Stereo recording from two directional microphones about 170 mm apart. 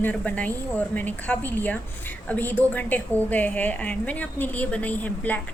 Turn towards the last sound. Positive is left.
turn(degrees=10)  # may be behind; listen again after turning